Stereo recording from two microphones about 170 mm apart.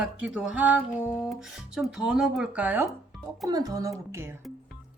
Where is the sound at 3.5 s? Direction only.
20° right (ahead or behind).